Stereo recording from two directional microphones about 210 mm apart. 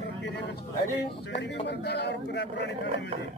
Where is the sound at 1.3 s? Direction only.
50° left (ahead or behind).